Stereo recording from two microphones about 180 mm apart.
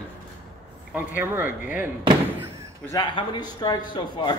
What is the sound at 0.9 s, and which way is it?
Speech, 10° right (ahead or behind).